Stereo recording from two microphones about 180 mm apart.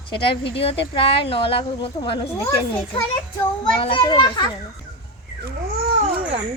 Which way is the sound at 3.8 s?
25° left (ahead or behind).